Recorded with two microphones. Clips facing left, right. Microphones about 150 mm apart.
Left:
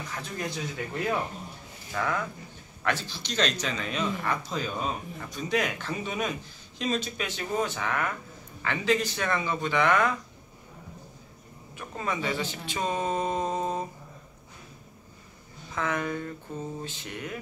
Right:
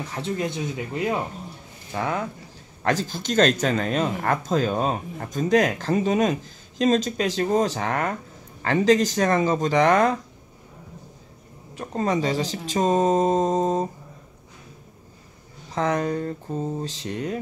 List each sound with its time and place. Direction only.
0.1 s speech: 25° right (ahead or behind)
2.8 s speech: 40° right (ahead or behind)
11.7 s speech: 40° right (ahead or behind)
15.7 s speech: 35° right (ahead or behind)